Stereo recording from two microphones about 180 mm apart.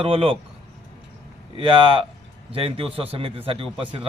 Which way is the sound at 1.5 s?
25° right (ahead or behind).